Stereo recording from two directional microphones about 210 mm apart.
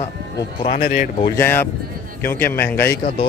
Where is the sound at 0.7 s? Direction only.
40° left (ahead or behind).